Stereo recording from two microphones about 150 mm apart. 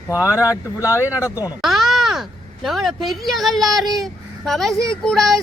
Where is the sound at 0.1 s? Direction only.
20° left (ahead or behind).